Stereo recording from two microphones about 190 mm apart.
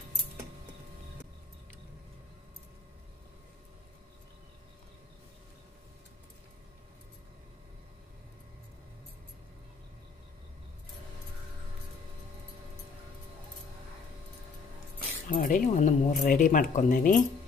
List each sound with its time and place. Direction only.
15.2 s speech: 45° left (ahead or behind)